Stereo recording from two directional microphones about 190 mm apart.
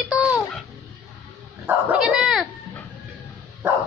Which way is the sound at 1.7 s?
5° right (ahead or behind).